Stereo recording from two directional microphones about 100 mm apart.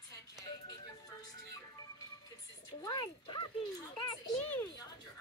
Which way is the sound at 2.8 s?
45° left (ahead or behind).